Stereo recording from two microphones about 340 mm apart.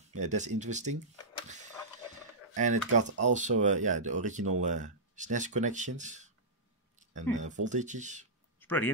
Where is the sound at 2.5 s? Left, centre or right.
Right.